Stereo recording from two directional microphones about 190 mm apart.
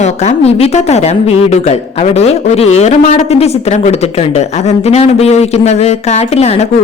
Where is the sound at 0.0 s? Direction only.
35° left (ahead or behind).